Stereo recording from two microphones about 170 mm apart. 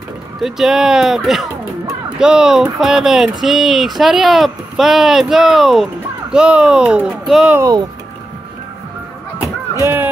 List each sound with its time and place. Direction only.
0.4 s speech: centre (ahead or behind)
7.5 s speech: 20° right (ahead or behind)